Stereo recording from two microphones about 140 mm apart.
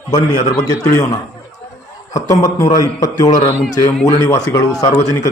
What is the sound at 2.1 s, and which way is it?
A man's voice, 25° left (ahead or behind).